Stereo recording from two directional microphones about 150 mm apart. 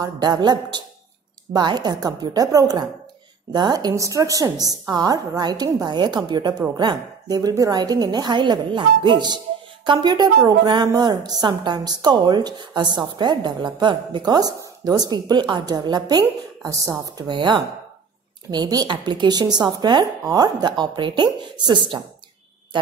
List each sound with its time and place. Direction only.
0.0 s a woman's voice: 25° right (ahead or behind)